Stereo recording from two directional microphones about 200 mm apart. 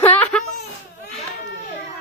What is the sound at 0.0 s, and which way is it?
Baby cry, 5° left (ahead or behind).